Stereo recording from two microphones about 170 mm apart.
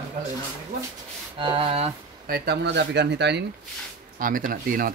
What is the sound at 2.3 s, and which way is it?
Speech, 75° right (ahead or behind).